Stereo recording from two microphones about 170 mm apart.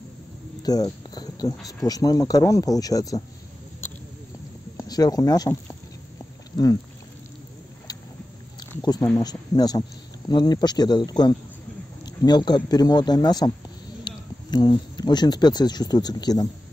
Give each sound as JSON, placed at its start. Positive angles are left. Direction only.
{"t": 0.6, "sound": "speech", "side_deg": 20}
{"t": 4.7, "sound": "speech", "side_deg": 20}
{"t": 9.2, "sound": "speech", "side_deg": 25}